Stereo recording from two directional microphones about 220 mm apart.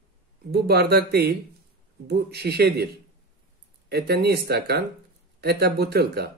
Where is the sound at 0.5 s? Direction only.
45° right (ahead or behind).